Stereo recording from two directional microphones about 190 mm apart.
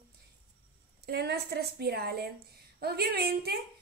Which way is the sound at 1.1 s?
60° right (ahead or behind).